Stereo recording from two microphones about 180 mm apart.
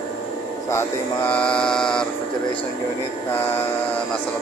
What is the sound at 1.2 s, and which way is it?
Mantra, 5° left (ahead or behind).